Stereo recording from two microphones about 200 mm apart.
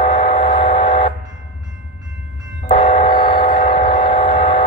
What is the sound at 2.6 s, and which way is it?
Train, 25° left (ahead or behind).